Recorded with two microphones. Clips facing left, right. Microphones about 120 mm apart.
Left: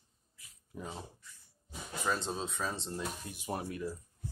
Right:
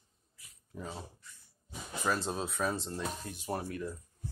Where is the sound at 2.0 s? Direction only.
5° right (ahead or behind).